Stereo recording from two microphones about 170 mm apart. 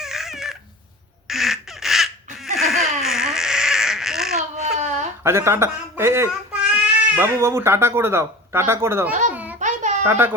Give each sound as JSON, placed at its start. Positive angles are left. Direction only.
{"t": 0.0, "sound": "dog", "side_deg": 0}
{"t": 1.3, "sound": "a sound", "side_deg": 0}
{"t": 4.5, "sound": "a sound", "side_deg": -45}
{"t": 5.2, "sound": "a man's voice", "side_deg": -15}
{"t": 9.3, "sound": "babbling", "side_deg": -10}
{"t": 9.6, "sound": "baby cry", "side_deg": -45}
{"t": 10.1, "sound": "a man's voice", "side_deg": -15}